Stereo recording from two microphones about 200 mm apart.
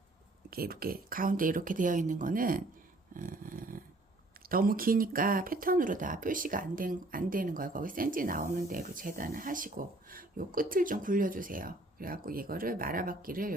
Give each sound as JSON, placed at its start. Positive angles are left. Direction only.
{"t": 0.5, "sound": "speech", "side_deg": -50}
{"t": 3.2, "sound": "a sound", "side_deg": -45}
{"t": 4.4, "sound": "speech", "side_deg": -45}